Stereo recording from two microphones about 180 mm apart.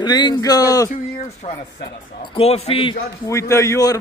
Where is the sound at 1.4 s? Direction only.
35° left (ahead or behind).